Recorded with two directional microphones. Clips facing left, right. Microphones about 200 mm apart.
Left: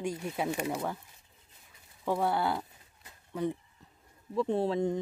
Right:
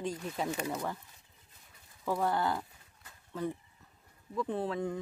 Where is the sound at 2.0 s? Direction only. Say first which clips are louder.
Left 2 dB; 10° left (ahead or behind).